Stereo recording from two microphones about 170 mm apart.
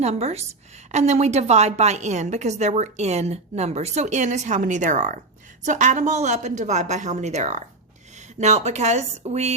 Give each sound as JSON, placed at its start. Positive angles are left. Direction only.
{"t": 0.0, "sound": "a woman's voice", "side_deg": -40}